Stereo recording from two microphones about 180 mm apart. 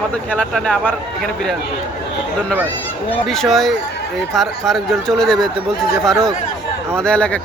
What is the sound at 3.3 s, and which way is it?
Speech, centre (ahead or behind).